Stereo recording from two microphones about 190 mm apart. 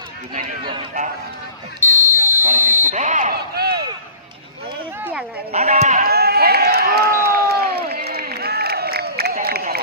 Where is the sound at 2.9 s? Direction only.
40° right (ahead or behind).